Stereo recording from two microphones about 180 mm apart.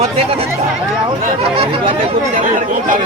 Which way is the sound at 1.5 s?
30° right (ahead or behind).